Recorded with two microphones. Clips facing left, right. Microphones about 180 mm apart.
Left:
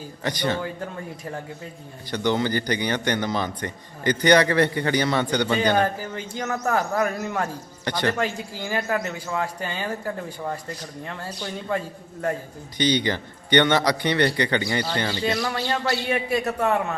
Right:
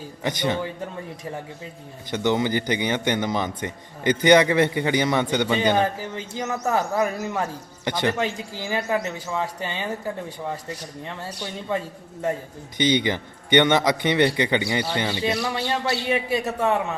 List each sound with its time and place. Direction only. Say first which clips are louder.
0.2 s speech: right 1 dB; 15° right (ahead or behind)
2.0 s a man's voice: right 1 dB; 20° right (ahead or behind)
5.7 s speech: even; centre (ahead or behind)
7.9 s a man's voice: right 1 dB; 20° right (ahead or behind)
8.2 s speech: even; centre (ahead or behind)
12.7 s a man's voice: right 1 dB; 20° right (ahead or behind)
15.4 s speech: even; 5° right (ahead or behind)